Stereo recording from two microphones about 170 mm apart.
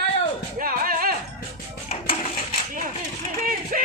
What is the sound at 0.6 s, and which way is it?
Music, 55° right (ahead or behind).